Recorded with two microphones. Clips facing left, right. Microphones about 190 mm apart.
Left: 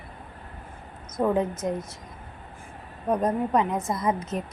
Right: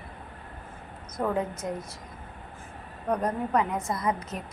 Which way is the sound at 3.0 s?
20° left (ahead or behind).